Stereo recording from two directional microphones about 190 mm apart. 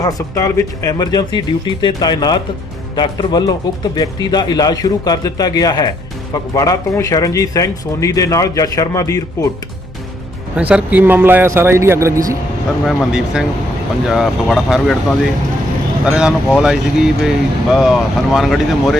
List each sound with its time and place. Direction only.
0.0 s a man's voice: 20° left (ahead or behind)
10.6 s speech: 10° right (ahead or behind)
12.8 s speech: centre (ahead or behind)